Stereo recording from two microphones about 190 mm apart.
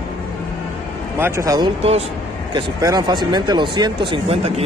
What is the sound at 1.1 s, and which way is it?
Speech, 15° right (ahead or behind).